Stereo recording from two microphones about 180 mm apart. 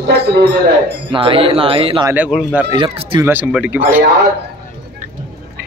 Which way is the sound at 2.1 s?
5° right (ahead or behind).